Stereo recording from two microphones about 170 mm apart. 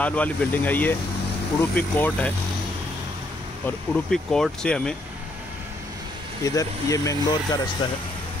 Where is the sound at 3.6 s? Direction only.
5° left (ahead or behind).